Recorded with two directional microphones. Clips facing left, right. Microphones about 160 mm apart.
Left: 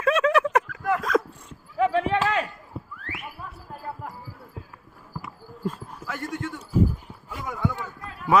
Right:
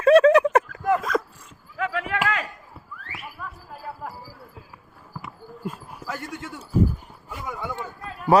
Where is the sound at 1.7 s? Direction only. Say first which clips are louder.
Left 6 dB; 30° left (ahead or behind).